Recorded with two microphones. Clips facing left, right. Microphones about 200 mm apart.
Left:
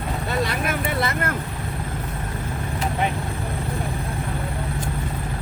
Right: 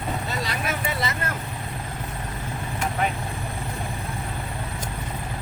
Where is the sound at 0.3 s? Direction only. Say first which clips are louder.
Left 4 dB; 55° left (ahead or behind).